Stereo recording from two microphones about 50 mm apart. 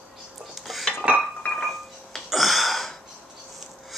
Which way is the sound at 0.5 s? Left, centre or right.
Centre.